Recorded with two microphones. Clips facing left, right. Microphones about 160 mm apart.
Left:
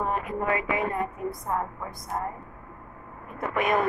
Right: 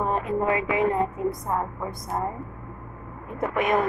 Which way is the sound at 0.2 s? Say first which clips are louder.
Right 4 dB; 25° right (ahead or behind).